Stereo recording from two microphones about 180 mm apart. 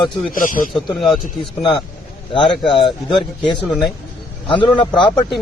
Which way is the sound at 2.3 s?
30° left (ahead or behind).